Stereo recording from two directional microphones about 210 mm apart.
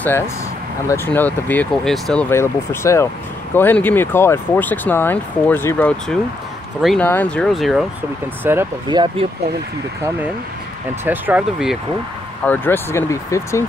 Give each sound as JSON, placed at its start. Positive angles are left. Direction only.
{"t": 0.8, "sound": "speech", "side_deg": 10}
{"t": 8.5, "sound": "speech", "side_deg": -15}
{"t": 11.1, "sound": "speech", "side_deg": -10}
{"t": 12.4, "sound": "speech", "side_deg": 10}